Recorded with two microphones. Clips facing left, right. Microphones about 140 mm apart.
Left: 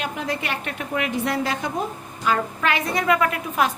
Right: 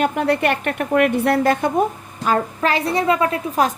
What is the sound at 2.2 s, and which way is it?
A woman's voice, 40° right (ahead or behind).